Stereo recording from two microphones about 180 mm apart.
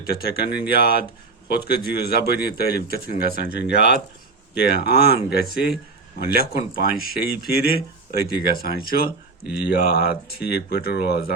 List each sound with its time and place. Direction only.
0.0 s speech: 60° left (ahead or behind)
9.4 s speech: 5° right (ahead or behind)
9.6 s speech: 60° left (ahead or behind)